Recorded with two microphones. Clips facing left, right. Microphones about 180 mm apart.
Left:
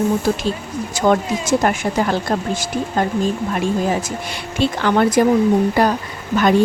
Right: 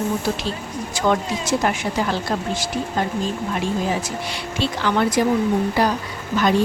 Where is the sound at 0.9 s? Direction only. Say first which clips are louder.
Left 4 dB; 45° left (ahead or behind).